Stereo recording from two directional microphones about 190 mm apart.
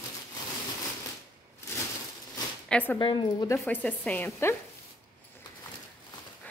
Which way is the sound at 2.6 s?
5° left (ahead or behind).